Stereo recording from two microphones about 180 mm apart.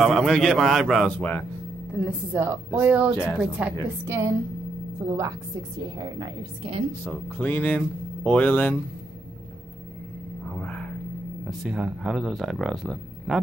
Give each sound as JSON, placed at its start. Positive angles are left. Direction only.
{"t": 0.0, "sound": "speech", "side_deg": 0}
{"t": 2.0, "sound": "a woman's voice", "side_deg": -10}
{"t": 6.9, "sound": "speech", "side_deg": 10}
{"t": 10.6, "sound": "a sound", "side_deg": 5}
{"t": 11.4, "sound": "speech", "side_deg": -5}